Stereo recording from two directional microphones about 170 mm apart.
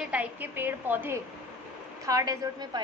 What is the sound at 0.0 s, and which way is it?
A woman's voice, 10° right (ahead or behind).